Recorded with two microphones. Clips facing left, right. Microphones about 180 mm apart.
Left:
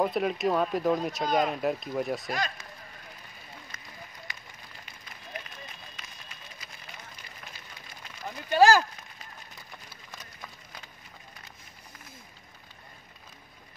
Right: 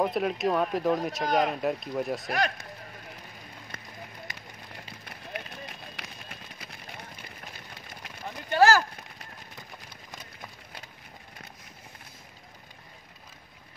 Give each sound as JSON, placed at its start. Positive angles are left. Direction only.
{"t": 0.0, "sound": "speech", "side_deg": 0}
{"t": 1.2, "sound": "speech", "side_deg": -65}
{"t": 1.5, "sound": "speech", "side_deg": 0}
{"t": 2.3, "sound": "speech", "side_deg": -65}
{"t": 5.0, "sound": "a sound", "side_deg": -70}
{"t": 8.5, "sound": "a sound", "side_deg": 15}